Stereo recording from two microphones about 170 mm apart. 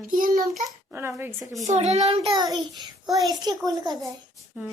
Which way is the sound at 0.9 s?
10° right (ahead or behind).